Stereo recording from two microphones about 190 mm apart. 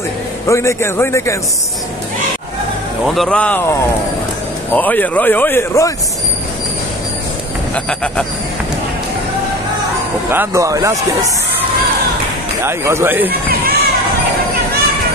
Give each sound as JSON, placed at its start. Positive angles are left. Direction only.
{"t": 0.5, "sound": "speech", "side_deg": 15}
{"t": 3.1, "sound": "speech", "side_deg": 0}
{"t": 4.7, "sound": "speech", "side_deg": 10}
{"t": 7.7, "sound": "a man's voice", "side_deg": 5}
{"t": 10.3, "sound": "speech", "side_deg": -15}
{"t": 12.6, "sound": "speech", "side_deg": -15}
{"t": 13.3, "sound": "a sound", "side_deg": -50}